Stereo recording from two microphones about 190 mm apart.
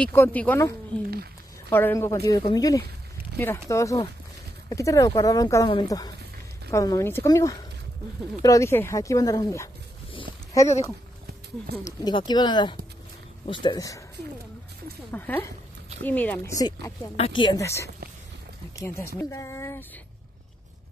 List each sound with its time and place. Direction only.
0.0 s speech: 10° left (ahead or behind)
11.7 s speech: 20° left (ahead or behind)
15.0 s speech: 10° left (ahead or behind)
19.1 s speech: 15° left (ahead or behind)